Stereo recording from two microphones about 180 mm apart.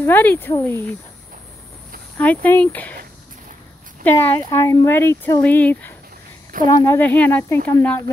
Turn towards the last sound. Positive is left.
turn(degrees=10)  # may be behind; listen again after turning